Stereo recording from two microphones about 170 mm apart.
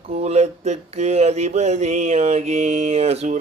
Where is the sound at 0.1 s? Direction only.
40° right (ahead or behind).